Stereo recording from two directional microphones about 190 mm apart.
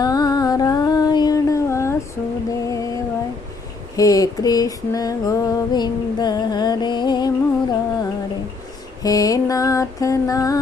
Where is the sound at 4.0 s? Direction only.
20° left (ahead or behind).